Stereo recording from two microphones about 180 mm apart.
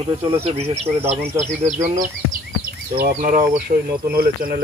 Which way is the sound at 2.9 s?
50° right (ahead or behind).